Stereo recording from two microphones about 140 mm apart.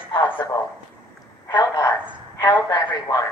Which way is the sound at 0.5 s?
25° left (ahead or behind).